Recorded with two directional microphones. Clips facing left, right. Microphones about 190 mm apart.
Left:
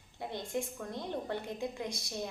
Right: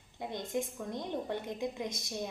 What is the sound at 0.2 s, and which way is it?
A woman's voice, 20° right (ahead or behind).